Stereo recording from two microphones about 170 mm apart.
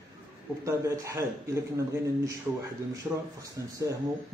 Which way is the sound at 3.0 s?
10° right (ahead or behind).